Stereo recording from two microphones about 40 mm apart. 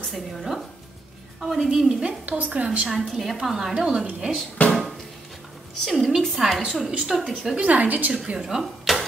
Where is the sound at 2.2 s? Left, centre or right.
Right.